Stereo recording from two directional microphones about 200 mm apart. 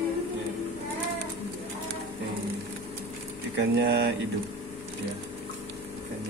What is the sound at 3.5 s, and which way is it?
Speech, 60° right (ahead or behind).